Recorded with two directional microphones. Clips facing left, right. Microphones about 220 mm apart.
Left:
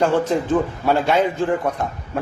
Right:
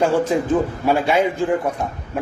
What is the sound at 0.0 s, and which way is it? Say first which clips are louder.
A man's voice: right 1 dB; 10° right (ahead or behind).